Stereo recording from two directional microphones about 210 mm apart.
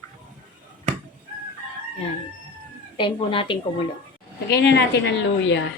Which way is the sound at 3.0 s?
25° left (ahead or behind).